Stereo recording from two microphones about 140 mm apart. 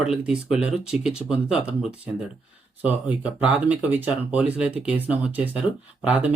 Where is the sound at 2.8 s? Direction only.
10° right (ahead or behind).